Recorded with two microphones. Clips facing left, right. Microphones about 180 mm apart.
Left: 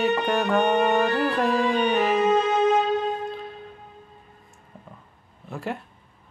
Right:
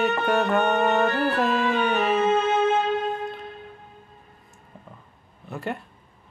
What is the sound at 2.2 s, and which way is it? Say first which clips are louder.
Music: left 1 dB; 15° left (ahead or behind).